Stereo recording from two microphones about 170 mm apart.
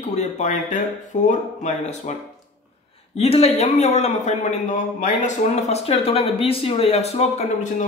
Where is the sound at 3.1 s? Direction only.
35° left (ahead or behind).